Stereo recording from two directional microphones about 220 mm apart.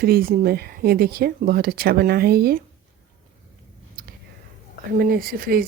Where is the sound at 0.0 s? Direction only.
40° right (ahead or behind).